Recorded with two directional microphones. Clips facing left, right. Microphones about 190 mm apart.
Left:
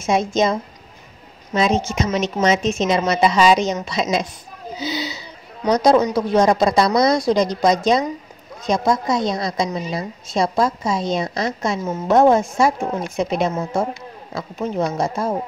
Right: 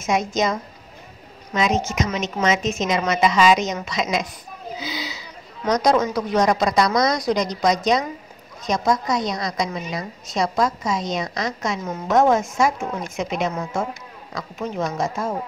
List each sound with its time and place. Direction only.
0.0 s a woman's voice: 30° left (ahead or behind)
4.7 s a sound: 30° left (ahead or behind)
5.7 s a woman's voice: 30° left (ahead or behind)